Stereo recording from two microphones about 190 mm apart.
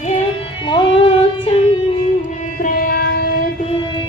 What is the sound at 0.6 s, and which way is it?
Music, 25° left (ahead or behind).